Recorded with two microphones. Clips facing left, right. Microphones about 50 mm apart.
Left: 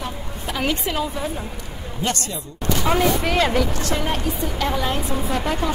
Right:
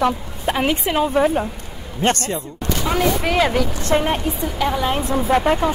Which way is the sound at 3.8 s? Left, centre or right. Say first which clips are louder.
Right 6 dB; right.